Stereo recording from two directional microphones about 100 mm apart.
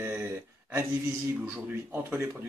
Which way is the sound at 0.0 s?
20° right (ahead or behind).